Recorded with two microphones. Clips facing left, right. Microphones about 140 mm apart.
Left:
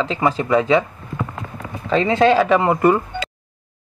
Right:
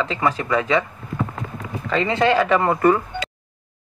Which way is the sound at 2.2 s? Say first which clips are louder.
Left 2 dB; 5° left (ahead or behind).